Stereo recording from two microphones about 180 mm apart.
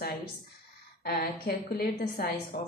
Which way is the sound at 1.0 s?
60° left (ahead or behind).